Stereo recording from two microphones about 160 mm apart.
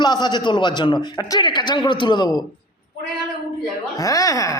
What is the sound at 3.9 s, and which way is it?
Speech, 20° left (ahead or behind).